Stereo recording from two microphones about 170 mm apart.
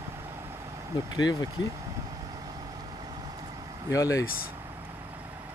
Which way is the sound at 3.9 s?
20° left (ahead or behind).